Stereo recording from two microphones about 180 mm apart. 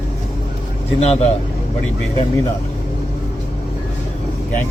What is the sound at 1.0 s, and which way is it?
Speech, 35° left (ahead or behind).